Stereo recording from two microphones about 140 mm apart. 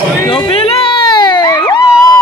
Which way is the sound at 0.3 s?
45° left (ahead or behind).